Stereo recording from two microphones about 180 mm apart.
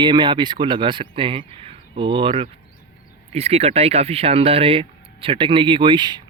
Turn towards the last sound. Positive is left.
turn(degrees=-25)  # may be behind; listen again after turning